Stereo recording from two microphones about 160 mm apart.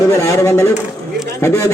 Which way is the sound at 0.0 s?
20° left (ahead or behind).